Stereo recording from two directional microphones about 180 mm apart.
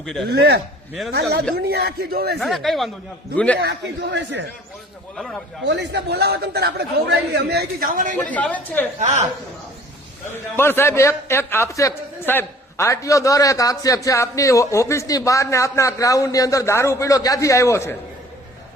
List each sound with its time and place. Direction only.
0.0 s speech: centre (ahead or behind)
0.3 s a man's voice: 65° right (ahead or behind)
2.4 s a man's voice: centre (ahead or behind)
3.6 s a man's voice: 70° right (ahead or behind)
5.1 s speech: centre (ahead or behind)
5.6 s a man's voice: 75° right (ahead or behind); by 8.1 s 50° right (ahead or behind)
8.2 s a man's voice: 10° left (ahead or behind)
9.0 s a woman's voice: 40° right (ahead or behind)
10.6 s a man's voice: 10° left (ahead or behind)